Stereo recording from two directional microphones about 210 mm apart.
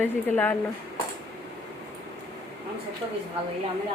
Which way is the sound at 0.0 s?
10° left (ahead or behind).